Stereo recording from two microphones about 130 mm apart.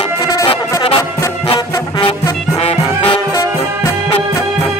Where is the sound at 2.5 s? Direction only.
45° left (ahead or behind).